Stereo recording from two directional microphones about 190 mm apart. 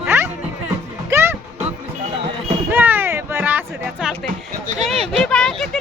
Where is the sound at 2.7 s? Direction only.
10° right (ahead or behind).